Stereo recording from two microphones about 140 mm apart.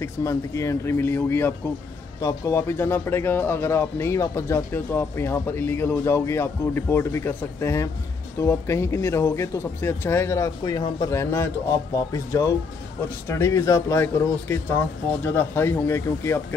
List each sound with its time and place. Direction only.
0.0 s speech: 20° left (ahead or behind)
11.1 s speech: 20° left (ahead or behind)